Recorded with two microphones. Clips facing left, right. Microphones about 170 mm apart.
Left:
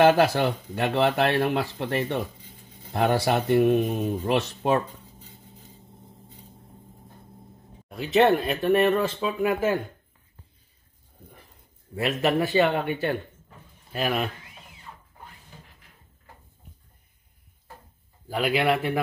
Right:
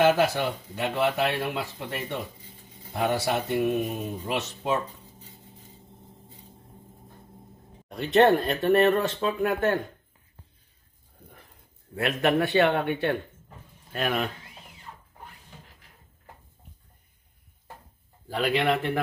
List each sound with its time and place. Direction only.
0.0 s speech: 60° left (ahead or behind)
2.9 s speech: 55° left (ahead or behind)
7.9 s speech: centre (ahead or behind)
11.9 s speech: centre (ahead or behind)
18.3 s speech: 10° left (ahead or behind)